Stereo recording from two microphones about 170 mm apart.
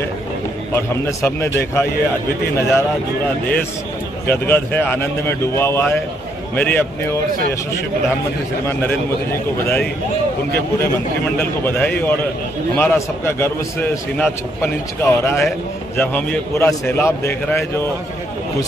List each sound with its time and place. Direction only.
0.7 s a man's voice: 15° left (ahead or behind)
4.3 s a man's voice: 10° left (ahead or behind)
8.6 s a man's voice: 15° left (ahead or behind)
11.3 s a man's voice: 10° left (ahead or behind)